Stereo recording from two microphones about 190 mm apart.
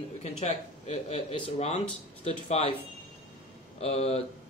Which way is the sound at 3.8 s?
30° left (ahead or behind).